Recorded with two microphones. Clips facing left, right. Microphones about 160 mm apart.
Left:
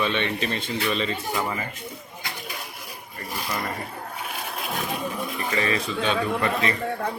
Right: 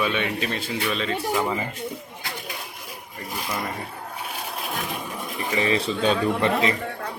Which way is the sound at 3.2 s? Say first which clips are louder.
Even; 15° right (ahead or behind).